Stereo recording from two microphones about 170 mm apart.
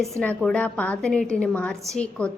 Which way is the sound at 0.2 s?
5° left (ahead or behind).